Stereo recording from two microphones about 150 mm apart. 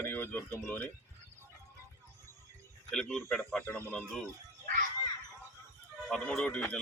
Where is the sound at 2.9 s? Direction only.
5° left (ahead or behind).